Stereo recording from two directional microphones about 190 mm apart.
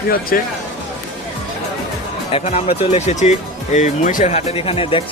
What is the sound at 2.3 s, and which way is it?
Speech, 30° left (ahead or behind).